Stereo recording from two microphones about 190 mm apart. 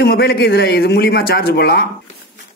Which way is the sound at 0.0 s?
55° left (ahead or behind).